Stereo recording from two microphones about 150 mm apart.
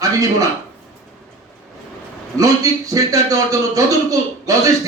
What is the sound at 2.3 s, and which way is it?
A man's voice, 25° right (ahead or behind).